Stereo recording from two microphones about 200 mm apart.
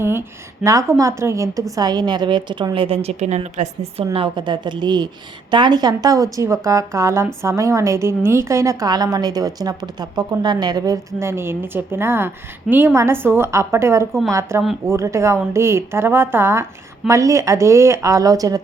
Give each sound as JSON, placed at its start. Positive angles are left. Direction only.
{"t": 0.0, "sound": "a woman's voice", "side_deg": -10}